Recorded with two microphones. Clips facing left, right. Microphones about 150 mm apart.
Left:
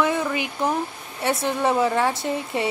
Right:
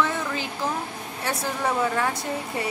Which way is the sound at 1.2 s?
25° left (ahead or behind).